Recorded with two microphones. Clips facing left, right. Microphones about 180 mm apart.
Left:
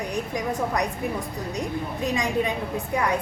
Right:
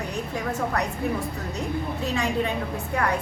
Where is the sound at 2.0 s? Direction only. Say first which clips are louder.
Left 2 dB; 15° left (ahead or behind).